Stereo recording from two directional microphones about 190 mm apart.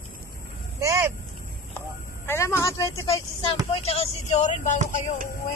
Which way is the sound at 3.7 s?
30° left (ahead or behind).